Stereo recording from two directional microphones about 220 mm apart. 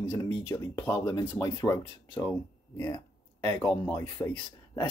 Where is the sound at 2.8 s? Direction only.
20° left (ahead or behind).